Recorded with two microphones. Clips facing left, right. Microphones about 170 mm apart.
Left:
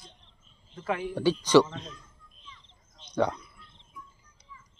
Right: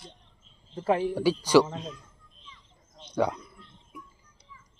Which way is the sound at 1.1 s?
5° right (ahead or behind).